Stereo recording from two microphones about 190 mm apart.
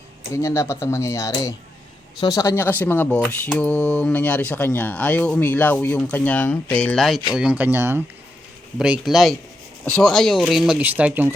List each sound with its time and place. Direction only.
0.3 s speech: 15° left (ahead or behind); by 11.3 s 10° right (ahead or behind)